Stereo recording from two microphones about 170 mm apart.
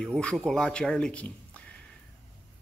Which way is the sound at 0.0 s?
5° left (ahead or behind).